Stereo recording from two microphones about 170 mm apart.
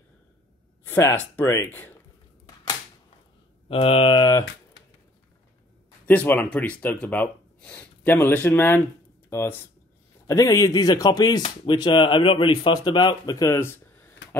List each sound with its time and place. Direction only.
0.8 s speech: 15° left (ahead or behind)
3.6 s speech: 35° left (ahead or behind)
6.0 s speech: 10° left (ahead or behind)